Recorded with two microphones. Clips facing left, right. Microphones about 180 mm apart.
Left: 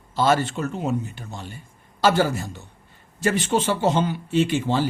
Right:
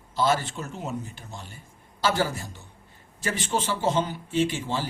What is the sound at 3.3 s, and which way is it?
A man's voice, 65° left (ahead or behind).